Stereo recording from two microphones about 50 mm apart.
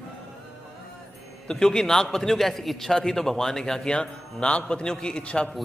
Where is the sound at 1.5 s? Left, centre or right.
Centre.